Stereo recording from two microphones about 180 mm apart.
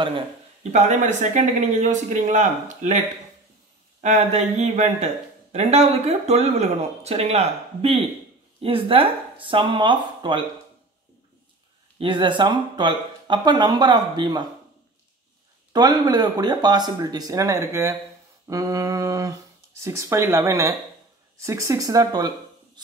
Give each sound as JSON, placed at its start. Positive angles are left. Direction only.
{"t": 0.7, "sound": "speech", "side_deg": -40}
{"t": 4.0, "sound": "speech", "side_deg": -40}
{"t": 12.0, "sound": "speech", "side_deg": -25}
{"t": 15.7, "sound": "speech", "side_deg": -25}